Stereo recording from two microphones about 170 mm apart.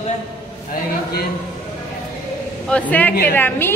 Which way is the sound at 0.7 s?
65° left (ahead or behind).